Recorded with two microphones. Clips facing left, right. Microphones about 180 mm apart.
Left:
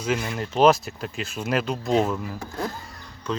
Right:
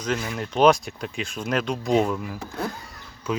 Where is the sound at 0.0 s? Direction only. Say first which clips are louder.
Left 1 dB; 5° left (ahead or behind).